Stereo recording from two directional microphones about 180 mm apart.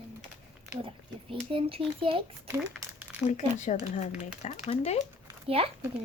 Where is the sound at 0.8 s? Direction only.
30° right (ahead or behind).